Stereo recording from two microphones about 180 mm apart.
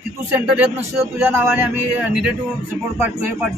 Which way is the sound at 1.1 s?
10° right (ahead or behind).